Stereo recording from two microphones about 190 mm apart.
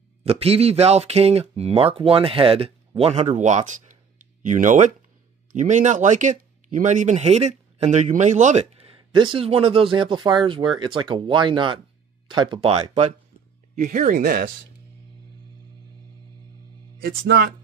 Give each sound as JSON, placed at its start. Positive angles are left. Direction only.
{"t": 0.2, "sound": "speech", "side_deg": -30}
{"t": 17.0, "sound": "speech", "side_deg": -55}